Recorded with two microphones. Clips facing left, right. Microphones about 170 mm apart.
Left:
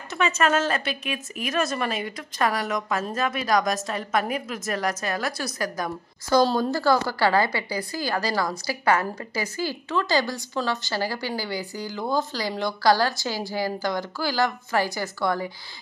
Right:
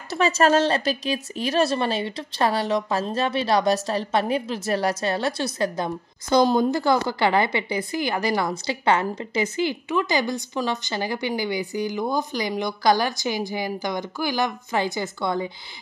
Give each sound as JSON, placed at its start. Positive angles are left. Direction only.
{"t": 0.1, "sound": "speech", "side_deg": -35}